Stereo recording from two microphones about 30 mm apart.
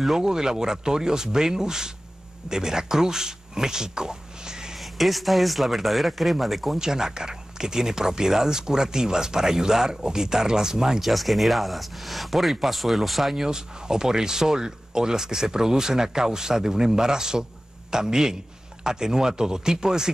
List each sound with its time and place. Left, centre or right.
0.2 s speech: right
4.7 s speech: centre
6.8 s speech: right
11.0 s speech: centre
13.4 s speech: right